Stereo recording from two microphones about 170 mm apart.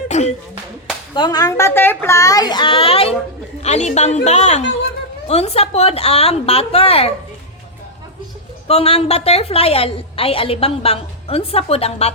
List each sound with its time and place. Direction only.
0.1 s a sound: 40° left (ahead or behind)
1.1 s a child's voice: 25° left (ahead or behind)
8.6 s a woman's voice: 35° left (ahead or behind)